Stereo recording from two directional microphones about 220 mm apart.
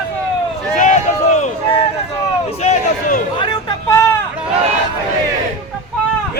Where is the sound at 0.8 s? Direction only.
35° left (ahead or behind).